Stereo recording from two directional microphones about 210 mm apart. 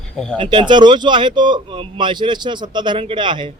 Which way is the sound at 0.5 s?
20° right (ahead or behind).